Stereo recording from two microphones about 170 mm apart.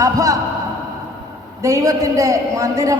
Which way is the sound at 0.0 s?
20° right (ahead or behind).